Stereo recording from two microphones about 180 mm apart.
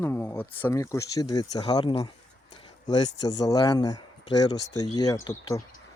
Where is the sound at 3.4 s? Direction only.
20° left (ahead or behind).